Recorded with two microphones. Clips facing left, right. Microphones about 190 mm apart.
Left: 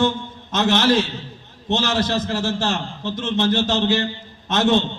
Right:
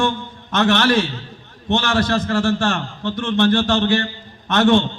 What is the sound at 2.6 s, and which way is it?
A man's voice, 20° left (ahead or behind).